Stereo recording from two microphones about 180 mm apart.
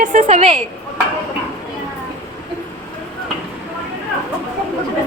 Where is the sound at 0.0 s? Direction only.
45° right (ahead or behind).